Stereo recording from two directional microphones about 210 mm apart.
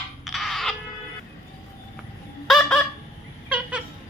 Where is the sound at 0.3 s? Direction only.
Centre (ahead or behind).